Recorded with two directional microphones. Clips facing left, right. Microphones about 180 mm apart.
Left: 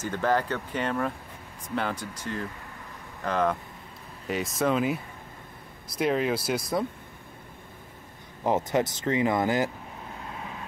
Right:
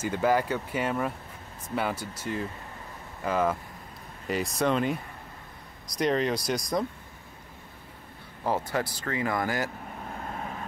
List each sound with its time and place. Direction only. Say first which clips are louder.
0.0 s speech: right 1 dB; 10° right (ahead or behind)
8.5 s speech: left 4 dB; 20° left (ahead or behind)
10.2 s vehicle: right 3 dB; 45° right (ahead or behind)